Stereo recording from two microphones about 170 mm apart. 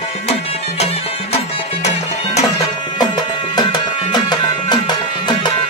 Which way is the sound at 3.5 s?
25° left (ahead or behind).